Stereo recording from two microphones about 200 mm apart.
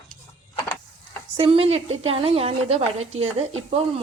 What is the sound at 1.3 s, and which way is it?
A woman's voice, 25° right (ahead or behind).